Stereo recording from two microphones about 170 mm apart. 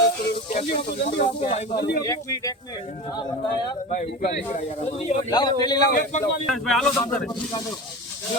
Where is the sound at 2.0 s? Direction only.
20° left (ahead or behind).